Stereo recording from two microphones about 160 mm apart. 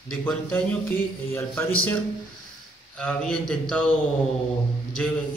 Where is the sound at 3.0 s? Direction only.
5° left (ahead or behind).